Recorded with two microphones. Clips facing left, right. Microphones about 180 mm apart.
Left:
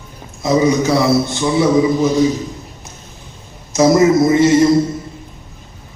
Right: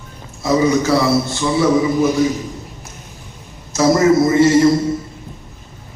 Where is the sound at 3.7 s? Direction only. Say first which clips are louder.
Left 3 dB; 20° left (ahead or behind).